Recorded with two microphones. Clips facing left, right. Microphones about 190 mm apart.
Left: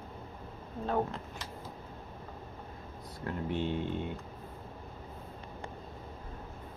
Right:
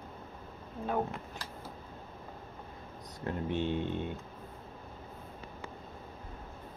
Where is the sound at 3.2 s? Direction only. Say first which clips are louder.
Right 1 dB; 20° right (ahead or behind).